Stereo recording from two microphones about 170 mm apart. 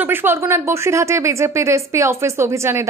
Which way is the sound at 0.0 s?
10° right (ahead or behind).